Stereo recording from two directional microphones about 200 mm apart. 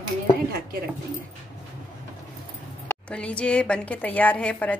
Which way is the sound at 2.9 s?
5° left (ahead or behind).